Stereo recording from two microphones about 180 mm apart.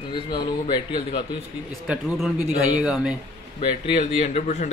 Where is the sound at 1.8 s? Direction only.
Centre (ahead or behind).